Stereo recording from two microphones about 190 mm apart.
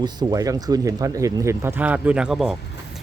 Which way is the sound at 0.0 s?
20° right (ahead or behind).